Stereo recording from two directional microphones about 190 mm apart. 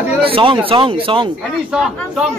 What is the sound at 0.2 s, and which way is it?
Speech, 30° right (ahead or behind).